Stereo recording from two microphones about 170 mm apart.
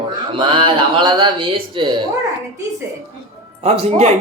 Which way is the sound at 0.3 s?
30° right (ahead or behind).